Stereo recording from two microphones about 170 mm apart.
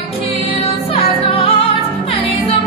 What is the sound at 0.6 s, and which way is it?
Music, 35° left (ahead or behind).